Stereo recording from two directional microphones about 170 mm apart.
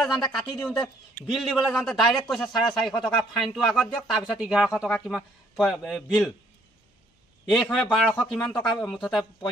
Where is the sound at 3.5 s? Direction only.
Centre (ahead or behind).